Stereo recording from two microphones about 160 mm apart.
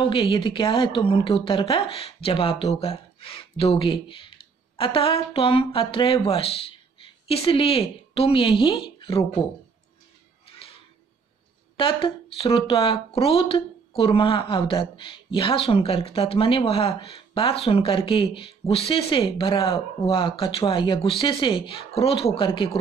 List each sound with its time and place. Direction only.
0.1 s a woman's voice: 35° left (ahead or behind)
11.7 s speech: 35° left (ahead or behind)